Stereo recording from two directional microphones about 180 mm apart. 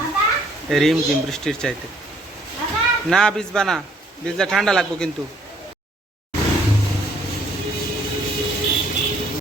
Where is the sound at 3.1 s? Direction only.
5° left (ahead or behind).